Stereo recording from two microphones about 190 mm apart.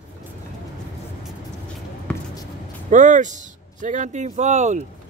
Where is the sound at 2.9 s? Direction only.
40° right (ahead or behind).